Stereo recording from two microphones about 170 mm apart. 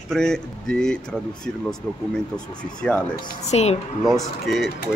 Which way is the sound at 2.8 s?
5° left (ahead or behind).